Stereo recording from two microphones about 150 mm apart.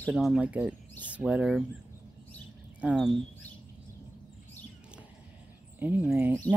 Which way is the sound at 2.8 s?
5° right (ahead or behind).